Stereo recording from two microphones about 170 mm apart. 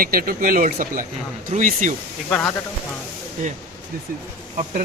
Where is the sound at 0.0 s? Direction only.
60° right (ahead or behind).